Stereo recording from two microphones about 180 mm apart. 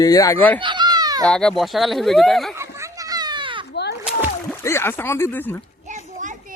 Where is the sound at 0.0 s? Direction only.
20° left (ahead or behind).